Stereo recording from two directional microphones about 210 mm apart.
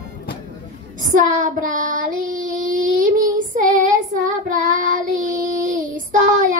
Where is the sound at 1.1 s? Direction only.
40° right (ahead or behind).